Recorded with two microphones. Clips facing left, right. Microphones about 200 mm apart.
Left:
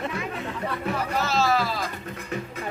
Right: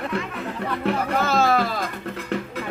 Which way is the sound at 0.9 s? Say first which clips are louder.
Right 5 dB; 55° right (ahead or behind).